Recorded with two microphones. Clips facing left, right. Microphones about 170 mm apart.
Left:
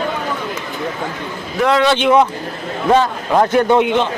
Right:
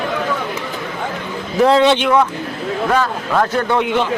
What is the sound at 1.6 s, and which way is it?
Speech, 30° right (ahead or behind).